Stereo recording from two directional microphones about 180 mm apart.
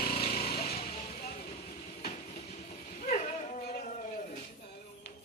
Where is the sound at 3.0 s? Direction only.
40° left (ahead or behind).